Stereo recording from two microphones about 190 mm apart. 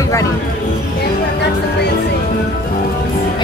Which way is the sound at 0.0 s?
15° left (ahead or behind).